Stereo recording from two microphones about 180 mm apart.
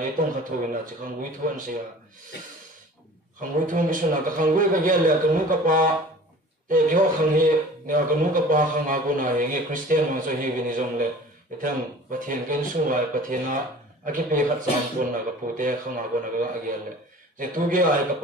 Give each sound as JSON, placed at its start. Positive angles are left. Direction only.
{"t": 0.0, "sound": "a man's voice", "side_deg": -45}
{"t": 3.3, "sound": "a man's voice", "side_deg": -50}
{"t": 15.5, "sound": "a man's voice", "side_deg": -45}